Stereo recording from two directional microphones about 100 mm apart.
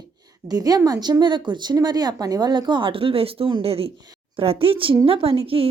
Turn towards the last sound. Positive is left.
turn(degrees=-70)  # may be behind; listen again after turning